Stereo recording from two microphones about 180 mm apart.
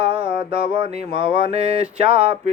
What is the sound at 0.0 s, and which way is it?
Mantra, 30° right (ahead or behind).